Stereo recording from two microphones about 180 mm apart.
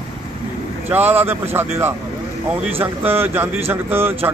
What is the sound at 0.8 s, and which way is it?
A man's voice, 10° right (ahead or behind).